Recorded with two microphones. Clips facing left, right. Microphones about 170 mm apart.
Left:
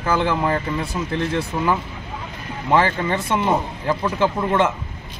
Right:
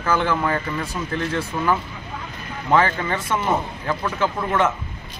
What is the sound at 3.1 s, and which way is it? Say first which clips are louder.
Speech: left 2 dB; 20° left (ahead or behind).